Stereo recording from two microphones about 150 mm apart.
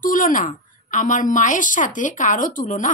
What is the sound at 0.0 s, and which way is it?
A woman's voice, 65° left (ahead or behind).